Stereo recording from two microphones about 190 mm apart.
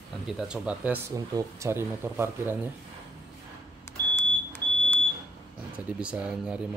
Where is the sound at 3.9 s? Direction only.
15° left (ahead or behind).